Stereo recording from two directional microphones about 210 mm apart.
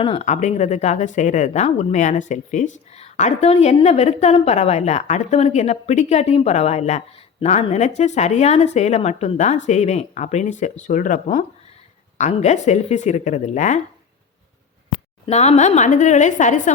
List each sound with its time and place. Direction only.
0.0 s speech: 25° left (ahead or behind)
15.3 s speech: 30° left (ahead or behind)